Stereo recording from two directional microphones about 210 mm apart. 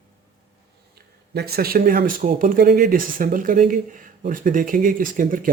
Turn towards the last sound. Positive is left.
turn(degrees=-40)  # may be behind; listen again after turning